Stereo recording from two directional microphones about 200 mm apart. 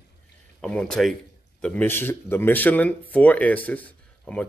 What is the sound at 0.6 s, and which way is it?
Speech, 5° left (ahead or behind).